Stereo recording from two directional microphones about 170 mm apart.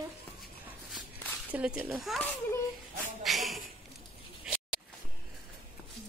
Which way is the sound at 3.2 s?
Centre (ahead or behind).